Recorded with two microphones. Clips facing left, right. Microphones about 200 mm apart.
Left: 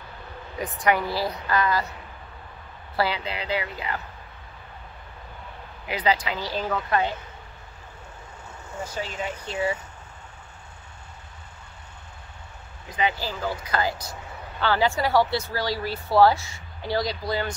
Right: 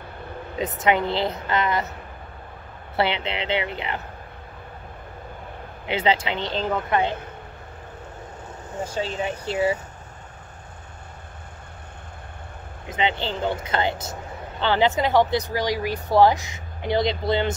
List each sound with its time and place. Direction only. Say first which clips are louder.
0.6 s speech: right 2 dB; 25° right (ahead or behind)
3.0 s speech: right 3 dB; 25° right (ahead or behind)
5.9 s speech: right 2 dB; 25° right (ahead or behind)
8.7 s speech: right 5 dB; 25° right (ahead or behind)
12.9 s speech: right 2 dB; 25° right (ahead or behind)